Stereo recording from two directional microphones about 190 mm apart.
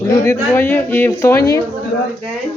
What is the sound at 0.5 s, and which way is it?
Speech, 10° left (ahead or behind).